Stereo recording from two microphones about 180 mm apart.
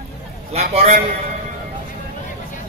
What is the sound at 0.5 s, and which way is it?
Speech, 35° right (ahead or behind).